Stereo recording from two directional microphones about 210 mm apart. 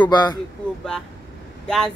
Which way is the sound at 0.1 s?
20° left (ahead or behind).